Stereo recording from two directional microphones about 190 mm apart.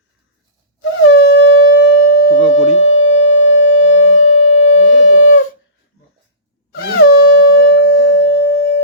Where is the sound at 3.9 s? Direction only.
80° left.